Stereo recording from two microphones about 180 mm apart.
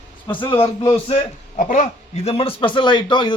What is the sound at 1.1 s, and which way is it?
A man's voice, 45° left (ahead or behind).